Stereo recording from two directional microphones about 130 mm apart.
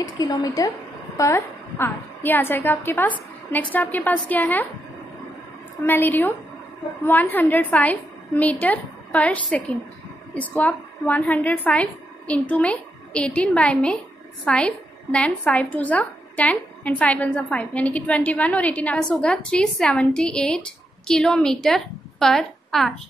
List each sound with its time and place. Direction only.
0.0 s a woman's voice: 30° left (ahead or behind); by 4.6 s 15° left (ahead or behind)
5.9 s a woman's voice: 15° left (ahead or behind)